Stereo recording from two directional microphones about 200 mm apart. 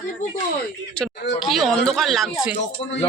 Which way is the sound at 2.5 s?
65° left (ahead or behind).